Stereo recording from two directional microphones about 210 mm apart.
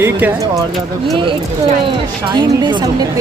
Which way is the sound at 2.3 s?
20° right (ahead or behind).